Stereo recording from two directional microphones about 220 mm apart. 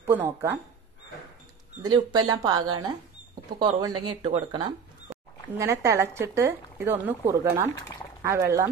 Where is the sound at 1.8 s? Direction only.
20° right (ahead or behind).